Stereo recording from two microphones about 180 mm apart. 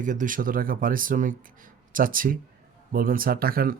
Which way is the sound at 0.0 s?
45° right (ahead or behind).